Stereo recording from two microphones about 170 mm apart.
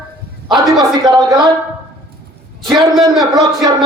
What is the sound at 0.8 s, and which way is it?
Speech, 20° right (ahead or behind).